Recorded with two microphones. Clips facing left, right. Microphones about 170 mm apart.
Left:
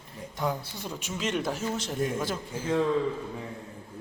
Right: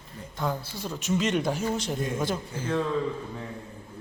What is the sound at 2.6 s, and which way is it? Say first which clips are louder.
Speech: left 2 dB; 10° left (ahead or behind).